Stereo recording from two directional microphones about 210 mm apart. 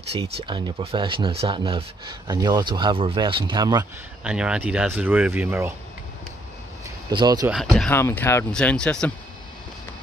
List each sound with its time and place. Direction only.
0.1 s speech: 25° right (ahead or behind)
4.2 s speech: 5° right (ahead or behind)
7.1 s speech: 20° right (ahead or behind)
7.4 s speech: centre (ahead or behind)